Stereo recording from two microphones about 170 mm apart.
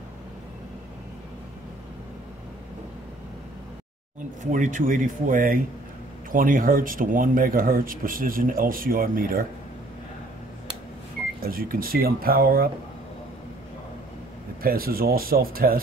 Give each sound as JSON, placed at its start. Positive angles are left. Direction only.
{"t": 4.4, "sound": "speech", "side_deg": -50}
{"t": 11.4, "sound": "speech", "side_deg": -60}
{"t": 14.6, "sound": "speech", "side_deg": -60}